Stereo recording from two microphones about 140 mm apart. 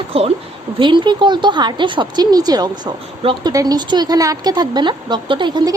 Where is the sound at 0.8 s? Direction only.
35° right (ahead or behind).